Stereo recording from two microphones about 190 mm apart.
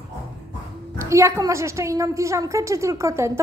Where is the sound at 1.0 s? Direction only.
15° right (ahead or behind).